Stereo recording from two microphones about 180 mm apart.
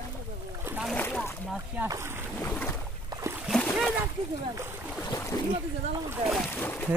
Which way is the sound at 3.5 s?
5° left (ahead or behind).